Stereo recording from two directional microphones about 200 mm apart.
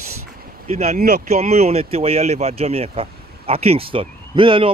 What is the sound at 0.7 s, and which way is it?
Speech, 35° right (ahead or behind).